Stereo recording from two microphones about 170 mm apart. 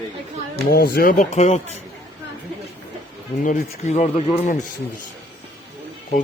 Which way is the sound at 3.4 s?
45° left (ahead or behind).